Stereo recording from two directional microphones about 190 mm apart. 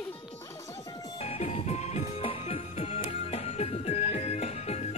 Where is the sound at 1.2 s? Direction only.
35° left (ahead or behind).